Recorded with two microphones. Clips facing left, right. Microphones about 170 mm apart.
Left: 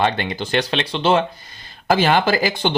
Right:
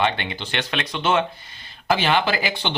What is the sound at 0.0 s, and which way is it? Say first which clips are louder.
Speech: left 3 dB; 40° left (ahead or behind).